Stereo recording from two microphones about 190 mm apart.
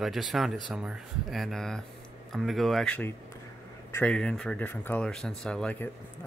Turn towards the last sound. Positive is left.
turn(degrees=5)  # may be behind; listen again after turning